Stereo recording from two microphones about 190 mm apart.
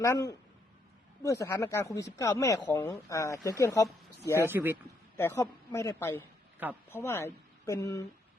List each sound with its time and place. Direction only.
0.0 s speech: 20° left (ahead or behind)
4.4 s speech: 10° right (ahead or behind)
5.1 s speech: 15° left (ahead or behind)